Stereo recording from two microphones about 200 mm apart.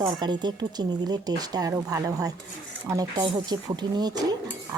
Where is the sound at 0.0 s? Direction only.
20° right (ahead or behind).